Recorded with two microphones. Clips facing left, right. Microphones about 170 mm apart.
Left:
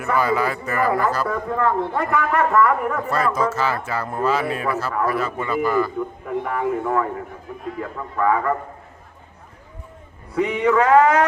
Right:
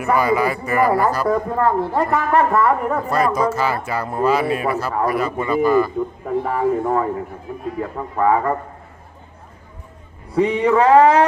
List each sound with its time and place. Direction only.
0.0 s speech: 15° right (ahead or behind)
1.3 s a man's voice: 35° right (ahead or behind)
3.1 s speech: 15° right (ahead or behind)
6.2 s a man's voice: 35° right (ahead or behind)
10.3 s a man's voice: 30° right (ahead or behind)